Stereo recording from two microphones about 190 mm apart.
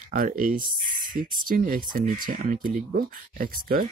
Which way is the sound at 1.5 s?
45° right (ahead or behind).